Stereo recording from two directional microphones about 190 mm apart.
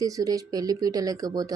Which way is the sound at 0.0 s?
20° right (ahead or behind).